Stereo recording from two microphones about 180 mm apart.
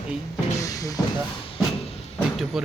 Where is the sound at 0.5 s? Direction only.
20° left (ahead or behind).